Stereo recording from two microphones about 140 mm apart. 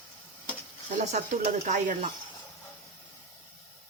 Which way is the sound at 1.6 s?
60° right (ahead or behind).